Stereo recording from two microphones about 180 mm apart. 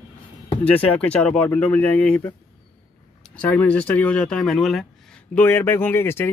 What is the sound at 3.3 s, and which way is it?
Speech, 5° left (ahead or behind).